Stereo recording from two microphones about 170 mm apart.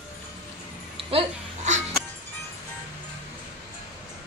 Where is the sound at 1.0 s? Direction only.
40° right (ahead or behind).